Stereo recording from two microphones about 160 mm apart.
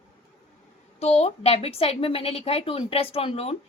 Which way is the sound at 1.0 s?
40° left (ahead or behind).